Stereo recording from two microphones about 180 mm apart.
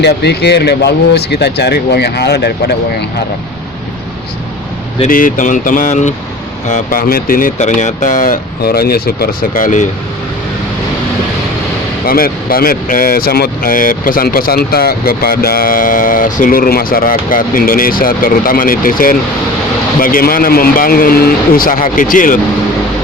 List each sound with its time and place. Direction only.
0.0 s speech: 70° left (ahead or behind)
5.0 s speech: 50° left (ahead or behind)
12.0 s speech: 55° left (ahead or behind)